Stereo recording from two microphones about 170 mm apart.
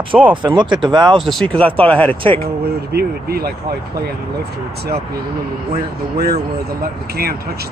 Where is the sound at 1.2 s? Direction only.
Centre (ahead or behind).